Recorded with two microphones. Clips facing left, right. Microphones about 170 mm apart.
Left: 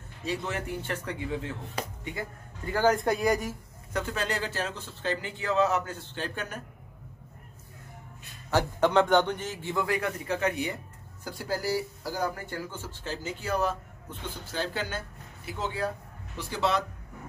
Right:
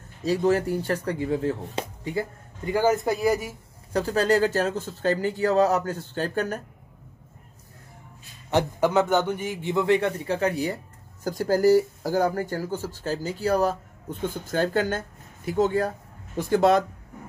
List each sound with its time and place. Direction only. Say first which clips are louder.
0.2 s speech: right 11 dB; 40° right (ahead or behind)
2.6 s a man's voice: right 3 dB; 10° right (ahead or behind)
3.9 s speech: right 9 dB; 35° right (ahead or behind)
8.7 s a man's voice: left 1 dB; 5° right (ahead or behind); by 16.8 s 50° right (ahead or behind)